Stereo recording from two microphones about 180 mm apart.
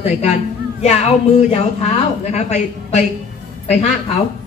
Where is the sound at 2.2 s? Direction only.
35° left (ahead or behind).